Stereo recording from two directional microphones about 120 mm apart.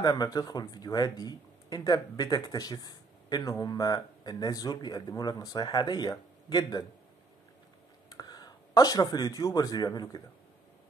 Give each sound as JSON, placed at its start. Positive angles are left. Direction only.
{"t": 0.0, "sound": "speech", "side_deg": 35}
{"t": 8.1, "sound": "speech", "side_deg": 35}